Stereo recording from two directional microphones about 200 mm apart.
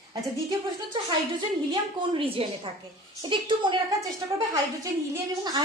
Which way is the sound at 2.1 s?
25° right (ahead or behind).